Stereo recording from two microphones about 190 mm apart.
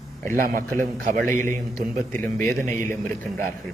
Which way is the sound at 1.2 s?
15° left (ahead or behind).